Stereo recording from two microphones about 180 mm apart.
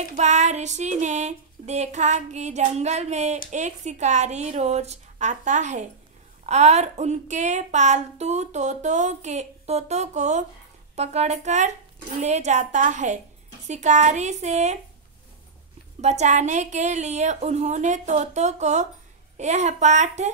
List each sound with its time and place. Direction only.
0.1 s a woman's voice: 40° right (ahead or behind)
16.0 s a woman's voice: 40° right (ahead or behind)